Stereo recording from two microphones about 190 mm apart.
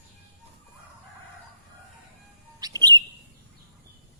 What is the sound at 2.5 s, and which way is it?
Bird, 20° right (ahead or behind).